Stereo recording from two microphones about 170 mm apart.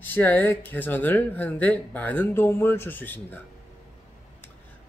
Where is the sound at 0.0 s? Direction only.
10° left (ahead or behind).